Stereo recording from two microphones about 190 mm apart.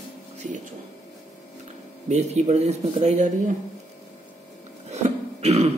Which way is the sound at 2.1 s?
35° right (ahead or behind).